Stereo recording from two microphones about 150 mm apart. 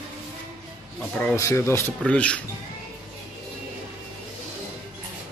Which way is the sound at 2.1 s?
10° left (ahead or behind).